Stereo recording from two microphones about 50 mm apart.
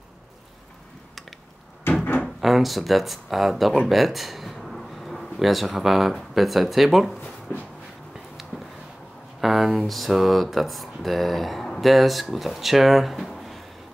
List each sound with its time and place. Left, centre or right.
1.9 s a sound: left
2.2 s speech: centre
9.4 s speech: centre